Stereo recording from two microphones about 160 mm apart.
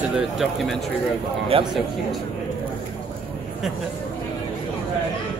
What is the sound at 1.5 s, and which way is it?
Speech, 35° right (ahead or behind).